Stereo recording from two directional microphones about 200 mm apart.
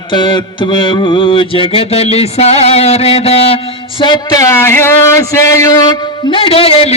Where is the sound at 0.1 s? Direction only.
20° left (ahead or behind).